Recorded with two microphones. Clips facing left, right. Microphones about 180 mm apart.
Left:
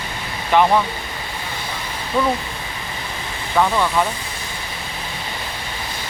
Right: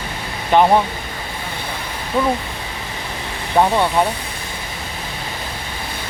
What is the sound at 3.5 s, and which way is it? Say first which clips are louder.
Speech: right 2 dB; 25° right (ahead or behind).